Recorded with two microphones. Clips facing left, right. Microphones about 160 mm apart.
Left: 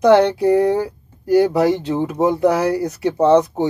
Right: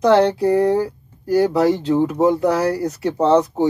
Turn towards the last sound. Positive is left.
turn(degrees=15)  # may be behind; listen again after turning